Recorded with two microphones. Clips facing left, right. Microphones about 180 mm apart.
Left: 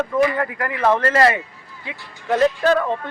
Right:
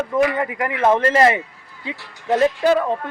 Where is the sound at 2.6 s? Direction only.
15° right (ahead or behind).